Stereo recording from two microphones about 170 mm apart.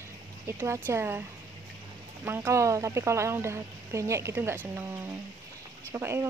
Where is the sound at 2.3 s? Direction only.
15° right (ahead or behind).